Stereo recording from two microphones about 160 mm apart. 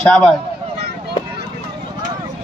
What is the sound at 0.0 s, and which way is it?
Speech, 5° left (ahead or behind).